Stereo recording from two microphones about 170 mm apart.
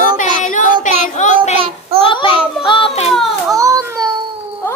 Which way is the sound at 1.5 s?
30° right (ahead or behind).